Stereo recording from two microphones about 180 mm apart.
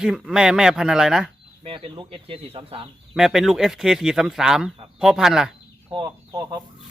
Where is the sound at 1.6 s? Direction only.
30° right (ahead or behind).